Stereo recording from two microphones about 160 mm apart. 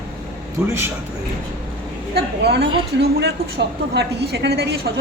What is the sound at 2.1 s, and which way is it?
A woman's voice, 90° right.